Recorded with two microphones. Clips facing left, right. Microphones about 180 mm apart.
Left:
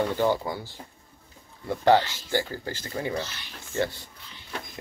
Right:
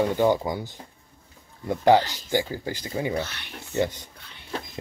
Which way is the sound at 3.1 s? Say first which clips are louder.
Right 3 dB; 60° right (ahead or behind).